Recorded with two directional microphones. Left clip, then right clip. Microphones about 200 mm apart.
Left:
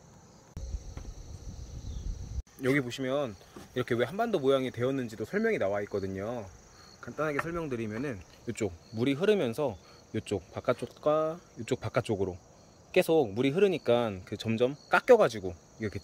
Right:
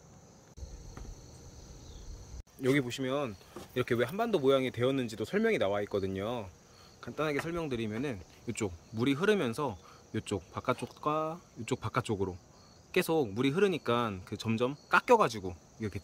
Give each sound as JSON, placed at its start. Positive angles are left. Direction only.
{"t": 2.6, "sound": "speech", "side_deg": 0}